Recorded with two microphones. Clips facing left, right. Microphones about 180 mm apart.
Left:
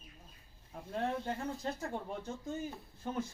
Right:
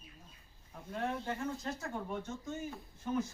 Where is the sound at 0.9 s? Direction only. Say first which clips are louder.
Left 1 dB; 30° left (ahead or behind).